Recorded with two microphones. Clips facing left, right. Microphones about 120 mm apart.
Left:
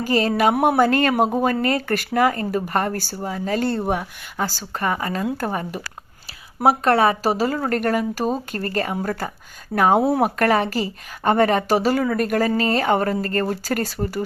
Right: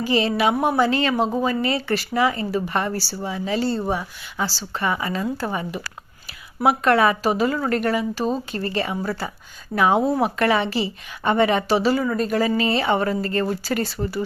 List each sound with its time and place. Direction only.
0.0 s speech: 45° left (ahead or behind)
0.5 s speech: 60° left (ahead or behind); by 12.0 s 45° left (ahead or behind)
12.0 s speech: 60° left (ahead or behind); by 14.3 s 45° left (ahead or behind)